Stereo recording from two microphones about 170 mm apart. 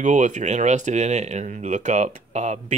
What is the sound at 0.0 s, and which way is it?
Speech, 45° right (ahead or behind).